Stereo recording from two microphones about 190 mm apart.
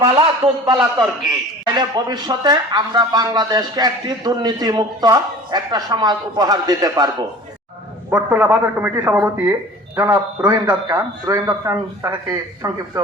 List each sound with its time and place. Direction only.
0.0 s speech: 30° right (ahead or behind)